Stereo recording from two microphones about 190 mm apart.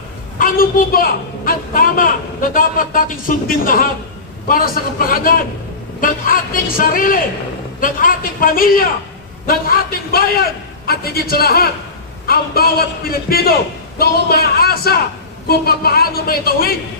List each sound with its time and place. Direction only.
0.3 s a woman's voice: 50° left (ahead or behind)